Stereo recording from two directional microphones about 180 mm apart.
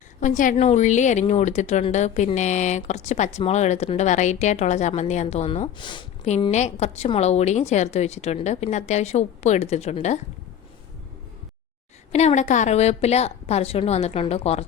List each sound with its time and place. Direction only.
0.2 s a woman's voice: 45° left (ahead or behind); by 6.1 s 25° left (ahead or behind)
6.5 s a woman's voice: 40° left (ahead or behind)
12.1 s a woman's voice: 40° left (ahead or behind)